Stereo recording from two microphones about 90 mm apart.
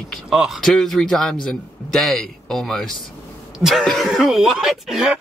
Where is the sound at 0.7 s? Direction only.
5° left (ahead or behind).